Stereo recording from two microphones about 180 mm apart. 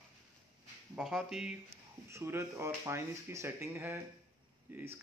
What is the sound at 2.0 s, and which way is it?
Speech, 15° right (ahead or behind).